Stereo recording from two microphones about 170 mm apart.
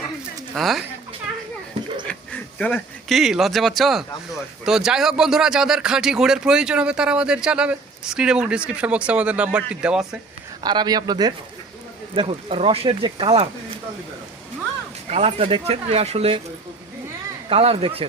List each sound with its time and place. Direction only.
0.5 s speech: centre (ahead or behind)
2.0 s speech: 10° left (ahead or behind)
10.6 s speech: 25° right (ahead or behind)
15.1 s speech: 35° right (ahead or behind)
17.5 s speech: 35° right (ahead or behind)